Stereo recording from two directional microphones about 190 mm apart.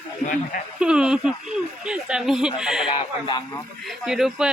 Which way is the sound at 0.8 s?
5° right (ahead or behind).